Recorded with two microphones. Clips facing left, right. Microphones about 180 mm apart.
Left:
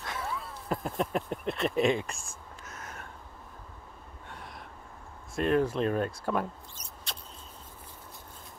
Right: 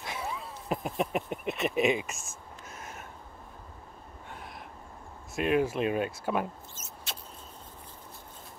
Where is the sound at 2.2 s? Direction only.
25° right (ahead or behind).